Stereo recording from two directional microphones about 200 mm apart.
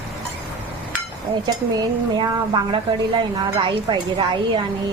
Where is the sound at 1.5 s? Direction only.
20° right (ahead or behind).